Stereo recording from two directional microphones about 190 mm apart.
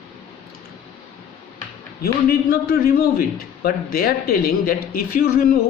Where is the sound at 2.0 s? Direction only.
50° left (ahead or behind).